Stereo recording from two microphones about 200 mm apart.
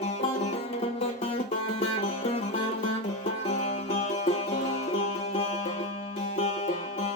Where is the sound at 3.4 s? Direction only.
35° left (ahead or behind).